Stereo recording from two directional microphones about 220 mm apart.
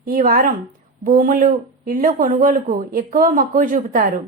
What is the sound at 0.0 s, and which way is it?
A woman's voice, 40° right (ahead or behind).